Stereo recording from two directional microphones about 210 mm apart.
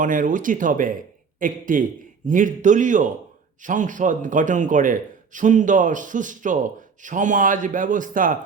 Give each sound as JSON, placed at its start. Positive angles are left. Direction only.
{"t": 0.0, "sound": "a man's voice", "side_deg": -40}